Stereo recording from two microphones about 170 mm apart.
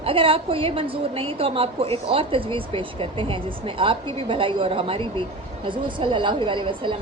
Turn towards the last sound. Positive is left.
turn(degrees=-30)  # may be behind; listen again after turning